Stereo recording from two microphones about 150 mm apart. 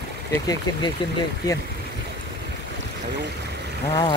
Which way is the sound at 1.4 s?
25° left (ahead or behind).